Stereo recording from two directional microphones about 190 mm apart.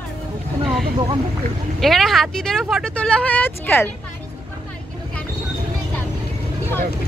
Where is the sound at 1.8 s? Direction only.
Centre (ahead or behind).